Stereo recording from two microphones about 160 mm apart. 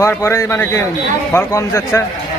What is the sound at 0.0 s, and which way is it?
A man's voice, 20° left (ahead or behind).